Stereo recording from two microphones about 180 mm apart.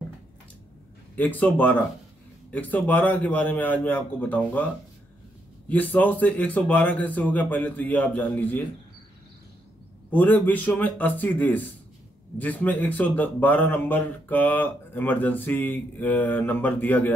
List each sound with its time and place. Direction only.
1.1 s a man's voice: 10° left (ahead or behind)
5.7 s a man's voice: 10° left (ahead or behind)
10.1 s a man's voice: 10° left (ahead or behind)